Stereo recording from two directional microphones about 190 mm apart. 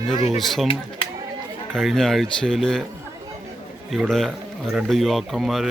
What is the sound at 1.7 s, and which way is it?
Speech, centre (ahead or behind).